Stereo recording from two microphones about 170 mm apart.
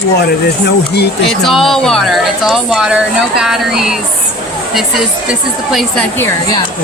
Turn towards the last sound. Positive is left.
turn(degrees=0)  # may be behind; listen again after turning